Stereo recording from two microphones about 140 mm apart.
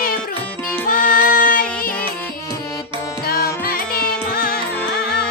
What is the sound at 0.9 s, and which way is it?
Music, 75° left (ahead or behind).